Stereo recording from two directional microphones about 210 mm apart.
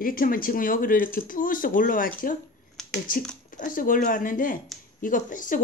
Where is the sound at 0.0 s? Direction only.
40° left (ahead or behind).